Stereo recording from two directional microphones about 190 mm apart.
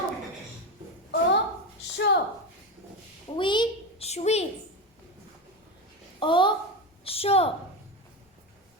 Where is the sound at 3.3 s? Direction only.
25° left (ahead or behind).